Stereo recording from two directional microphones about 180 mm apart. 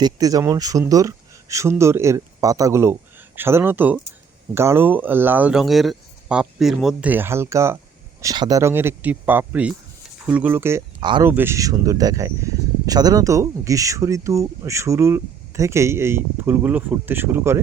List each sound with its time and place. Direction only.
0.0 s a man's voice: 20° right (ahead or behind)
11.0 s speech: 25° right (ahead or behind)
11.3 s speech: 10° right (ahead or behind)